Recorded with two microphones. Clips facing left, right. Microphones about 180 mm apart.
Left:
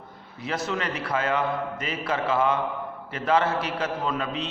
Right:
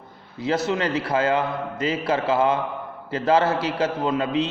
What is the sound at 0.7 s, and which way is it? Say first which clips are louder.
A man's voice: right 5 dB; 30° right (ahead or behind).